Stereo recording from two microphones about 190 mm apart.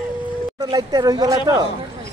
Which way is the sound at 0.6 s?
20° right (ahead or behind).